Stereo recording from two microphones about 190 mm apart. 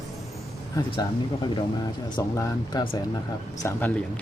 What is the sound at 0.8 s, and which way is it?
Speech, 20° left (ahead or behind).